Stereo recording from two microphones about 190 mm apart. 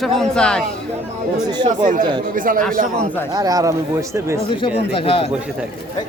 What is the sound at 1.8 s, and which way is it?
Speech, 45° right (ahead or behind).